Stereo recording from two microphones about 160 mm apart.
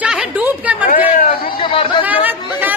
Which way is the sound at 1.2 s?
65° left (ahead or behind).